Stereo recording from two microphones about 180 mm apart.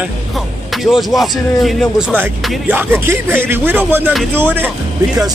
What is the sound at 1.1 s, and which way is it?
A man's voice, centre (ahead or behind).